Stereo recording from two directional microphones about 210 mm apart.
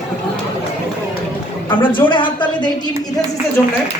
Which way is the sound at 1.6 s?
25° left (ahead or behind).